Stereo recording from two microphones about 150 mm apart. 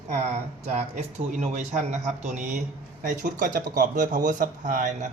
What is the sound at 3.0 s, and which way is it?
Speech, 60° right (ahead or behind).